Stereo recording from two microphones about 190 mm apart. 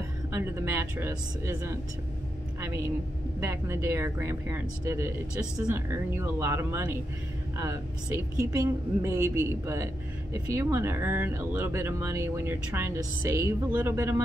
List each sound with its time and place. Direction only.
0.3 s speech: 15° right (ahead or behind)
3.3 s speech: 15° right (ahead or behind)